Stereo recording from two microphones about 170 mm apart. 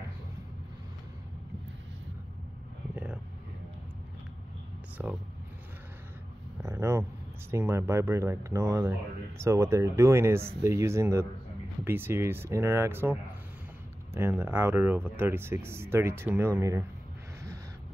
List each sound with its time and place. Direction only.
5.0 s speech: 10° right (ahead or behind)
6.6 s a sound: 15° right (ahead or behind)
7.5 s speech: 15° right (ahead or behind)